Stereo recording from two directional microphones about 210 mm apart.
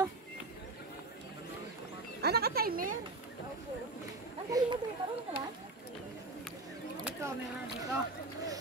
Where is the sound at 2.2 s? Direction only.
50° right (ahead or behind).